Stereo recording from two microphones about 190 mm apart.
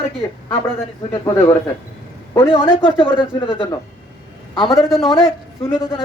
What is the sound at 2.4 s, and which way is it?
Speech, 25° left (ahead or behind).